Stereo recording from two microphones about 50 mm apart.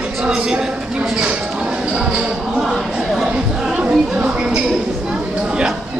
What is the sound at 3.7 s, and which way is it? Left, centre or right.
Music, right.